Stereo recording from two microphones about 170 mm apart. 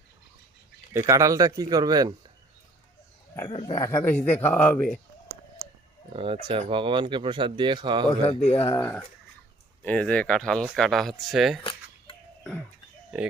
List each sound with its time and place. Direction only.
0.9 s speech: 20° right (ahead or behind)
3.5 s a man's voice: 30° left (ahead or behind)
3.8 s a man's voice: 15° left (ahead or behind)
6.1 s speech: 35° right (ahead or behind)
8.3 s speech: 35° left (ahead or behind)
8.6 s a man's voice: 15° left (ahead or behind); by 11.6 s centre (ahead or behind)
11.6 s a sound: 30° left (ahead or behind)
12.4 s a sound: 10° left (ahead or behind)